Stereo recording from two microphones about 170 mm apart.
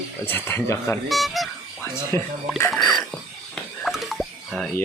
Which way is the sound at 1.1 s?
Centre (ahead or behind).